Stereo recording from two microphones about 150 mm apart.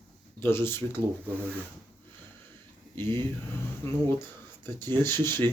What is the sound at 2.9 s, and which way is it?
Speech, 15° left (ahead or behind).